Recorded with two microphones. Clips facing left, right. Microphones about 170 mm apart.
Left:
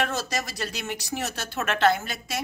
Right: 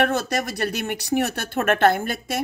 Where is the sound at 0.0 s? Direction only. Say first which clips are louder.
Right 6 dB; 60° right (ahead or behind).